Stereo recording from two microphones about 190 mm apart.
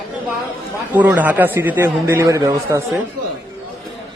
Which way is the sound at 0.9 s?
10° right (ahead or behind).